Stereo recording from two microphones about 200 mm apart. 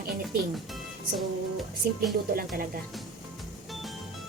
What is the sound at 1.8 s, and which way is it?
Speech, 50° right (ahead or behind).